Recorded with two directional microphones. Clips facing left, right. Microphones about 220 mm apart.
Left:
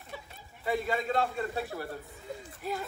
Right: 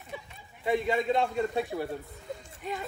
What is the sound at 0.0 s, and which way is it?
A man's voice, centre (ahead or behind).